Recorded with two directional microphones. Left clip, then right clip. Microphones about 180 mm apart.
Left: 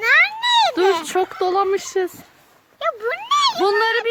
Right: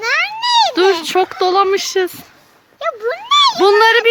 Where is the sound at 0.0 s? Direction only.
20° left (ahead or behind).